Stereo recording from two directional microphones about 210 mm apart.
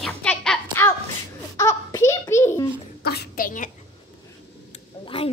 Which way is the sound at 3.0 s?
50° left (ahead or behind).